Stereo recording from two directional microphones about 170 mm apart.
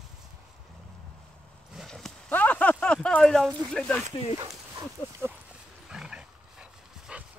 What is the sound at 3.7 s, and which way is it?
Speech, 5° left (ahead or behind).